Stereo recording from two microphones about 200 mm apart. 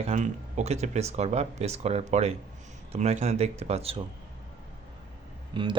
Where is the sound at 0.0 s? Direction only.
35° right (ahead or behind).